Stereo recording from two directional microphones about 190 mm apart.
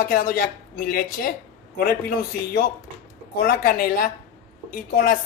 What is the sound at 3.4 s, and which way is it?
Speech, 50° left (ahead or behind).